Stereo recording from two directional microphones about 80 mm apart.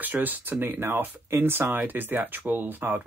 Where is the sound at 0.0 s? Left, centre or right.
Right.